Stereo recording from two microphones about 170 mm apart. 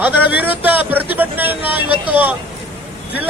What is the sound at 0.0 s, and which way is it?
Speech, 10° right (ahead or behind).